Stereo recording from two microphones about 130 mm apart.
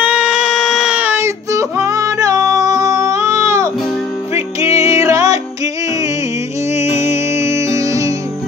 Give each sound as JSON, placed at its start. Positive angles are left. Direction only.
{"t": 0.0, "sound": "a sound", "side_deg": -10}
{"t": 4.6, "sound": "music", "side_deg": -25}
{"t": 6.7, "sound": "music", "side_deg": -20}